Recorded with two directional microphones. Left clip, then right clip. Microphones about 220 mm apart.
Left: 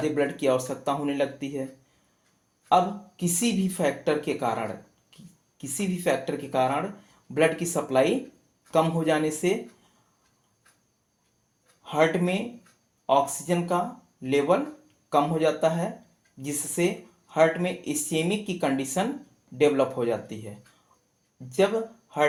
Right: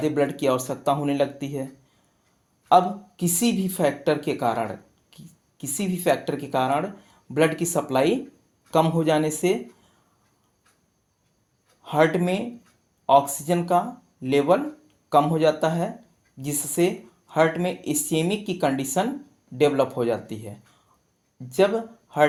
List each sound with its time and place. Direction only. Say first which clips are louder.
0.0 s speech: right 2 dB; 45° right (ahead or behind)
2.6 s speech: right 4 dB; 45° right (ahead or behind)
11.8 s speech: right 3 dB; 45° right (ahead or behind)